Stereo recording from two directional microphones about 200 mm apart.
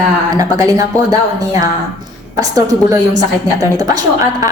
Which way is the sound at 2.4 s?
20° right (ahead or behind).